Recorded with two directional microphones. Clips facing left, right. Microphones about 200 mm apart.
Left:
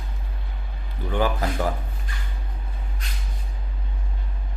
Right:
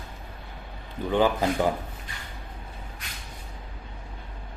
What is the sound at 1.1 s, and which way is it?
Speech, 20° right (ahead or behind).